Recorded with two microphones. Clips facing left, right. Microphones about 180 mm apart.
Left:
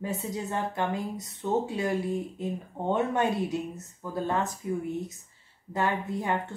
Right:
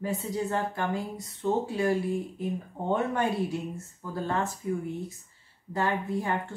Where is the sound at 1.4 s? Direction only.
10° right (ahead or behind).